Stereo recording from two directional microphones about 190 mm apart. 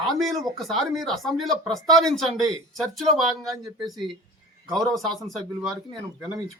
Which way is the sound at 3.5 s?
20° right (ahead or behind).